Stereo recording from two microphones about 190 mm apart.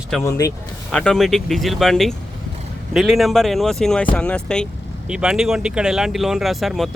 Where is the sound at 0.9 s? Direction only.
5° left (ahead or behind).